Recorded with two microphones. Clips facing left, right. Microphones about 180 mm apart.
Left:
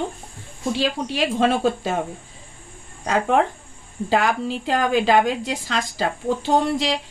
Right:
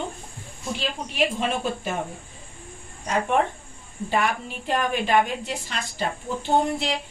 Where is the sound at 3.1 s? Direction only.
90° left.